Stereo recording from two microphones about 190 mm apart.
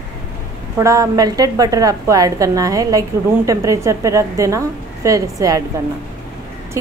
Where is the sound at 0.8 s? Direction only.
15° right (ahead or behind).